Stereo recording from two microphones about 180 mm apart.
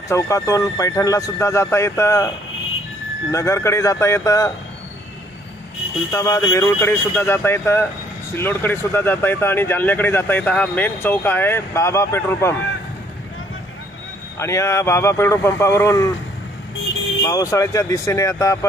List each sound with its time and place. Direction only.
0.1 s speech: 20° left (ahead or behind)
3.3 s speech: 15° left (ahead or behind)
6.1 s speech: 15° left (ahead or behind)
14.3 s speech: 15° left (ahead or behind)
17.2 s speech: 20° left (ahead or behind)